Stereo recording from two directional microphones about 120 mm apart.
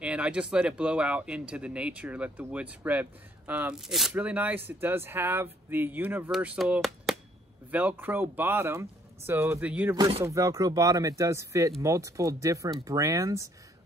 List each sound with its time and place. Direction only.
0.0 s speech: 10° right (ahead or behind)
6.3 s speech: 5° right (ahead or behind)
7.7 s speech: 15° right (ahead or behind)
10.2 s speech: 25° right (ahead or behind)